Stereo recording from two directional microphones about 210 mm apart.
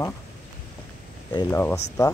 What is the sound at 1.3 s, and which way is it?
Speech, 15° left (ahead or behind).